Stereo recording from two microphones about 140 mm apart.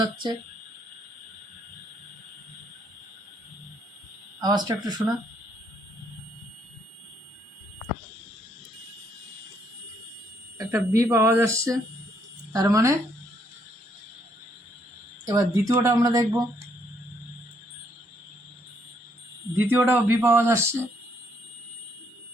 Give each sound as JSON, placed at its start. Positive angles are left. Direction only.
{"t": 0.0, "sound": "speech", "side_deg": -30}
{"t": 4.4, "sound": "speech", "side_deg": -30}
{"t": 10.6, "sound": "speech", "side_deg": -25}
{"t": 15.3, "sound": "speech", "side_deg": -20}
{"t": 19.5, "sound": "speech", "side_deg": -15}